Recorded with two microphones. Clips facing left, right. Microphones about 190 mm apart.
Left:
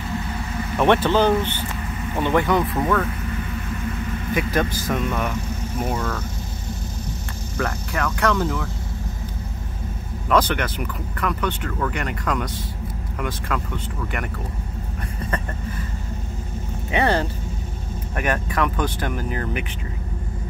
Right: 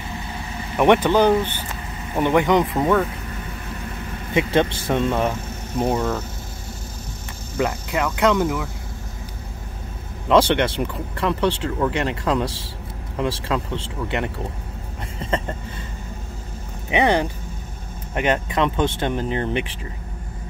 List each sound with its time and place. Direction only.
0.7 s speech: 15° right (ahead or behind)
4.3 s speech: 25° right (ahead or behind)
7.5 s speech: 20° right (ahead or behind)
10.2 s speech: 25° right (ahead or behind)
16.9 s speech: 15° right (ahead or behind)